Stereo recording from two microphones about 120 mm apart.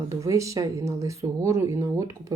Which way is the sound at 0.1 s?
25° right (ahead or behind).